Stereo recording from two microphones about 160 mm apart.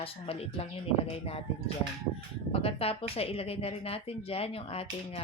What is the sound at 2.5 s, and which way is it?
Speech, 35° left (ahead or behind).